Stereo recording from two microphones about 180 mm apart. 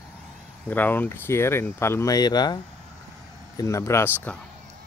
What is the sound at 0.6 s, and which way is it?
Speech, 10° left (ahead or behind).